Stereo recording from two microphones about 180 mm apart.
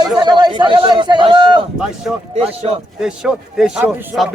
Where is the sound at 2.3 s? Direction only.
35° right (ahead or behind).